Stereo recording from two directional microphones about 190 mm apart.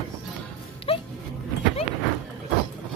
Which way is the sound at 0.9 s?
30° left (ahead or behind).